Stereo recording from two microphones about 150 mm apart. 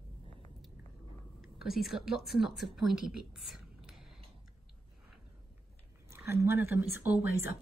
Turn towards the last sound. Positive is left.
turn(degrees=-15)  # may be behind; listen again after turning